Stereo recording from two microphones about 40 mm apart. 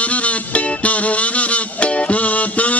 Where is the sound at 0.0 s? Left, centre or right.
Left.